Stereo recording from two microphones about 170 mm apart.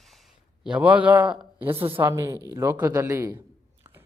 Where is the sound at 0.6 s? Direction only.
10° right (ahead or behind).